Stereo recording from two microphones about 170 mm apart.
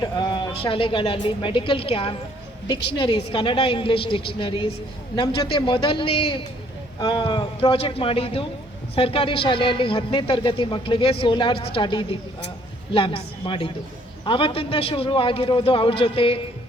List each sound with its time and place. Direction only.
0.0 s a woman's voice: 25° left (ahead or behind)